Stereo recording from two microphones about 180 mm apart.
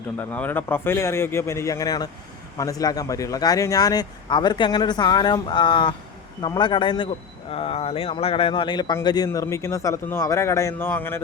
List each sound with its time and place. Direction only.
0.2 s speech: 10° left (ahead or behind)